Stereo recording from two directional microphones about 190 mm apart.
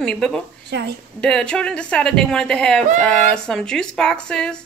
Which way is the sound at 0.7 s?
60° right (ahead or behind).